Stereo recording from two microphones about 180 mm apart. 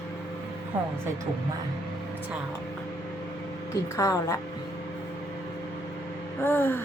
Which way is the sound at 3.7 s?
15° left (ahead or behind).